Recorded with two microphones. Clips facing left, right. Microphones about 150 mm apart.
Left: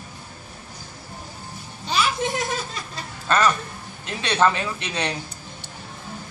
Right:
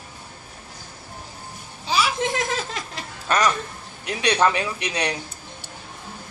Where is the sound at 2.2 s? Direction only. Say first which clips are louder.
Right 1 dB; 90° right.